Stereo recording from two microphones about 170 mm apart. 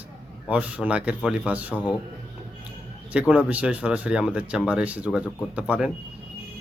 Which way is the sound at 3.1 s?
5° right (ahead or behind).